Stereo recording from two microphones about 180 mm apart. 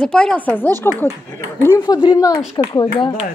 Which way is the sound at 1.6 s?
20° left (ahead or behind).